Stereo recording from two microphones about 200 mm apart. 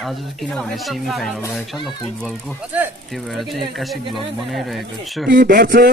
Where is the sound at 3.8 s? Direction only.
Centre (ahead or behind).